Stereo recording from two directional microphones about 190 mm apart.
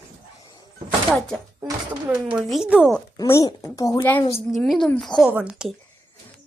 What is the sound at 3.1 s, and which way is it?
Speech, 15° left (ahead or behind).